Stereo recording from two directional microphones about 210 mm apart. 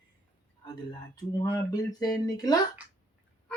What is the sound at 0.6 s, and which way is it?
Speech, 20° left (ahead or behind).